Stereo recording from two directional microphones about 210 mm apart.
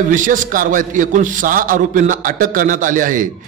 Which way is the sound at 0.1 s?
40° right (ahead or behind).